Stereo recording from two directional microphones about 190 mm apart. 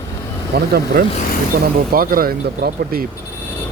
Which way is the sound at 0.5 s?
55° right (ahead or behind).